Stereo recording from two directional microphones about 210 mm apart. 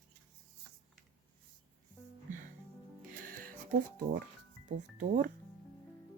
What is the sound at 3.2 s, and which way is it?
Music, 40° right (ahead or behind).